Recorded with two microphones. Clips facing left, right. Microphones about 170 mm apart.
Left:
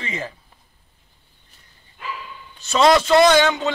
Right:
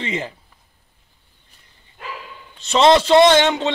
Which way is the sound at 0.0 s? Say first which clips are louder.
Right 4 dB; 25° right (ahead or behind).